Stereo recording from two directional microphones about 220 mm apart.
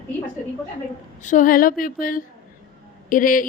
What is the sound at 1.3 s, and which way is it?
Speech, 35° left (ahead or behind).